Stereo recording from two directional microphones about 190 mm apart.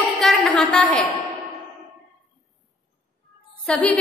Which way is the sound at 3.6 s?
5° left (ahead or behind).